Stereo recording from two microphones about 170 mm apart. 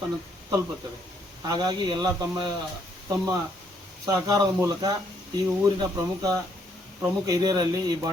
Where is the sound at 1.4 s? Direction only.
25° right (ahead or behind).